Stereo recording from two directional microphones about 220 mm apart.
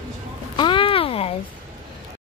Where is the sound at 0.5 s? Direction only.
20° left (ahead or behind).